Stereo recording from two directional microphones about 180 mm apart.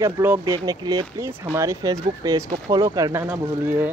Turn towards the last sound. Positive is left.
turn(degrees=-10)  # may be behind; listen again after turning